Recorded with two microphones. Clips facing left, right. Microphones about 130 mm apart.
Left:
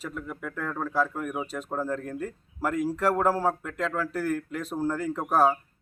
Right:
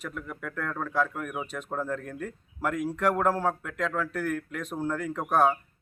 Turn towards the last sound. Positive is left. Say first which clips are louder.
# left 1 dB
turn(degrees=5)  # may be behind; listen again after turning